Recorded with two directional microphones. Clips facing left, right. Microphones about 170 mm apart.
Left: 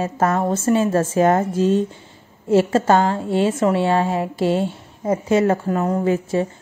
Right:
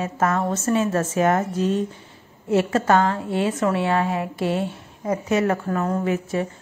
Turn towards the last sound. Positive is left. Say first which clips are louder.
# left 4 dB
turn(degrees=30)  # may be behind; listen again after turning